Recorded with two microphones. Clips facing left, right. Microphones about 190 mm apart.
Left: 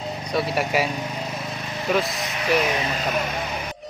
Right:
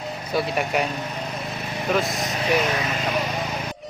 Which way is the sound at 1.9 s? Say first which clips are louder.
Even; centre (ahead or behind).